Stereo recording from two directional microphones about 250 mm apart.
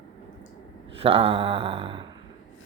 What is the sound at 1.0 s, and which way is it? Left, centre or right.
Speech, right.